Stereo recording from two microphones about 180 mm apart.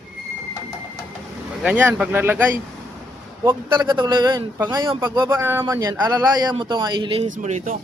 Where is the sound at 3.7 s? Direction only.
25° right (ahead or behind).